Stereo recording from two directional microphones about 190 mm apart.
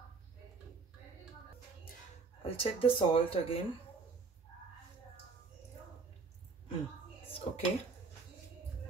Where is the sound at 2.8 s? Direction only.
30° left (ahead or behind).